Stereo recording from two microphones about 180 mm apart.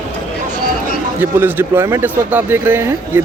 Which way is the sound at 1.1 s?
10° right (ahead or behind).